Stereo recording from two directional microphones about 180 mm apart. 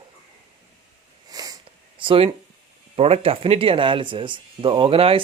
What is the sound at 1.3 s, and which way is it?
Sniff, 20° right (ahead or behind).